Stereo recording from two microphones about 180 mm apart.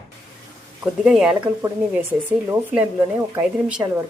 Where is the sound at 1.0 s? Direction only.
5° right (ahead or behind).